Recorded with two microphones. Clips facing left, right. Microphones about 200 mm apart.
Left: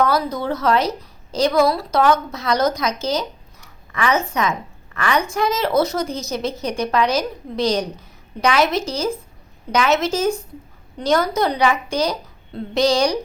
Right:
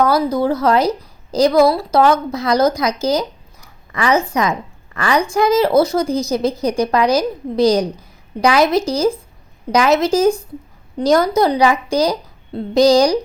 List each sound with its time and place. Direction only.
0.0 s a woman's voice: 30° right (ahead or behind)